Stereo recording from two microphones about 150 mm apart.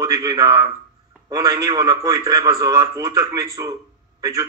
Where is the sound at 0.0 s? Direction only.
25° right (ahead or behind).